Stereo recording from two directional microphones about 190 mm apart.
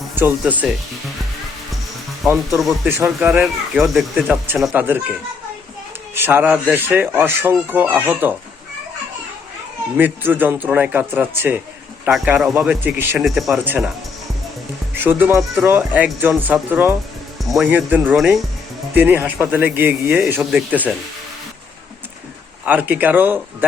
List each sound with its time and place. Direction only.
0.2 s speech: 10° right (ahead or behind)
2.2 s speech: 15° right (ahead or behind)
2.6 s speech: centre (ahead or behind)
6.1 s speech: 10° right (ahead or behind)
10.0 s speech: 10° right (ahead or behind)
14.9 s speech: 10° right (ahead or behind)
22.6 s speech: 10° right (ahead or behind)